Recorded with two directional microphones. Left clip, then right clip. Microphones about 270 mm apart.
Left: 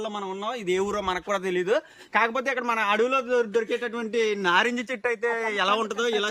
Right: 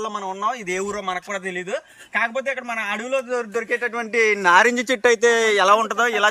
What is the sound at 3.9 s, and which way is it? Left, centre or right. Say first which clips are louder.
Speech: right 6 dB; centre.